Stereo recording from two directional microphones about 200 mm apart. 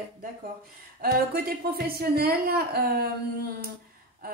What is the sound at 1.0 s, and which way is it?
A woman's voice, 50° right (ahead or behind).